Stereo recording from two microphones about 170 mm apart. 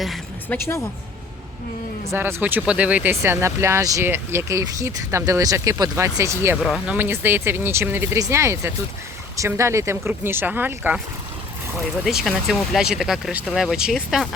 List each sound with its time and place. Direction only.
0.4 s a woman's voice: 15° left (ahead or behind)
2.0 s speech: 10° right (ahead or behind)
6.6 s speech: centre (ahead or behind)
12.0 s speech: centre (ahead or behind)